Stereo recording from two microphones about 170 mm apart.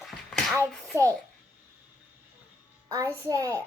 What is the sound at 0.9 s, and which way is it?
Speech, 15° right (ahead or behind).